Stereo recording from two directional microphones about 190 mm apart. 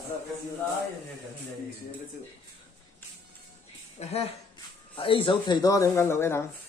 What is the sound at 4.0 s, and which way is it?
Speech, 30° left (ahead or behind).